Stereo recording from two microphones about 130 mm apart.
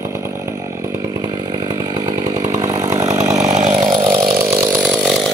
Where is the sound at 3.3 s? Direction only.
60° right (ahead or behind).